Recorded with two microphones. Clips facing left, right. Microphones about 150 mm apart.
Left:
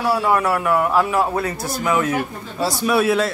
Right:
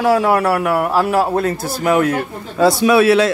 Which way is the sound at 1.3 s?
50° right (ahead or behind).